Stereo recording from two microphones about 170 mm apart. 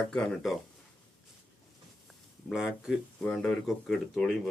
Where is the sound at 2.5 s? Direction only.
5° right (ahead or behind).